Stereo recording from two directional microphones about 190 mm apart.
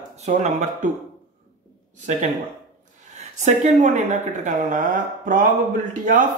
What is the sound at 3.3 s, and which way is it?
Speech, 40° right (ahead or behind).